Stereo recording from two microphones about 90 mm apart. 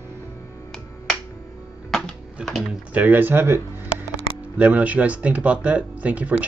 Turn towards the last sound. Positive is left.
turn(degrees=-15)  # may be behind; listen again after turning